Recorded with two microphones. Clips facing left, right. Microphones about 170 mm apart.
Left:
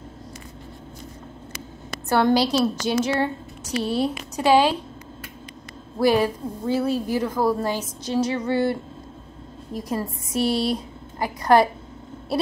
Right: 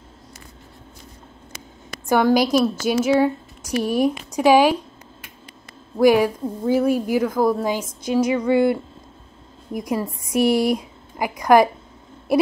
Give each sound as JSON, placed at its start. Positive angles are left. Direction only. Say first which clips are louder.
{"t": 2.0, "sound": "a woman's voice", "louder": "right 2 dB", "side_deg": -15}
{"t": 5.9, "sound": "a woman's voice", "louder": "right 4 dB", "side_deg": -15}
{"t": 9.8, "sound": "a woman's voice", "louder": "right 3 dB", "side_deg": -15}